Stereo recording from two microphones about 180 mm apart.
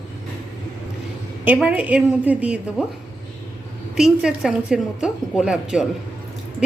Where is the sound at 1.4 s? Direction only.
10° right (ahead or behind).